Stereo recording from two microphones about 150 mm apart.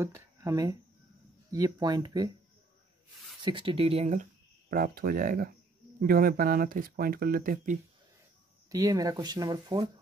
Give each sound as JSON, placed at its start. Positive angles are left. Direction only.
{"t": 0.0, "sound": "speech", "side_deg": -20}
{"t": 3.4, "sound": "speech", "side_deg": -35}
{"t": 4.7, "sound": "speech", "side_deg": -90}
{"t": 8.6, "sound": "speech", "side_deg": -25}